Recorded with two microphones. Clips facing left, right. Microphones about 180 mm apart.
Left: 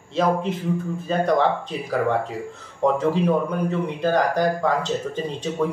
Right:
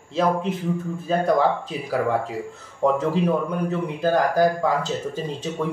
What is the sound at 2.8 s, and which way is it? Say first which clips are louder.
Speech: left 1 dB; 5° right (ahead or behind).